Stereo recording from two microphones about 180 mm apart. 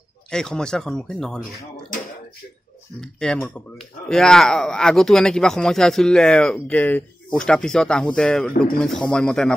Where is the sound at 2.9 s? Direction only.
5° left (ahead or behind).